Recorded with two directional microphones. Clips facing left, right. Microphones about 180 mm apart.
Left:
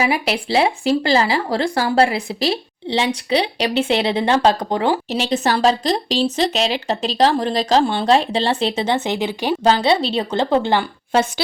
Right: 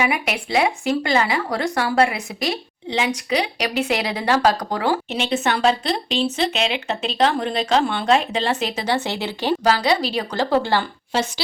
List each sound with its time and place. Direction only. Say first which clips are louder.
0.0 s speech: left 3 dB; 30° left (ahead or behind)
5.0 s speech: left 3 dB; 35° left (ahead or behind); by 9.6 s 15° left (ahead or behind)
9.6 s a woman's voice: left 4 dB; 25° left (ahead or behind)